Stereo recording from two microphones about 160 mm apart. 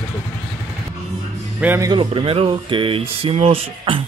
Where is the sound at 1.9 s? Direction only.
30° right (ahead or behind).